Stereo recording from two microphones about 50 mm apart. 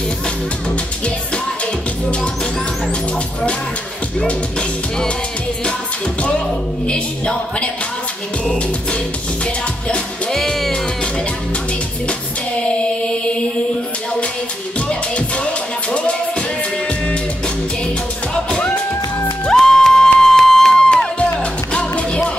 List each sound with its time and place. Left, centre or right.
4.3 s music: left
6.9 s music: left
10.3 s music: centre
12.1 s music: left
14.9 s music: left
19.4 s music: centre